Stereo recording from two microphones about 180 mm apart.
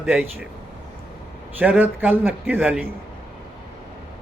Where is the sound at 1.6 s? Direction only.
10° right (ahead or behind).